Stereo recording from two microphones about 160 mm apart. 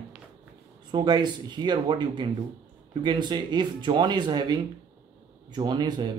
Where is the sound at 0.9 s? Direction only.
25° right (ahead or behind).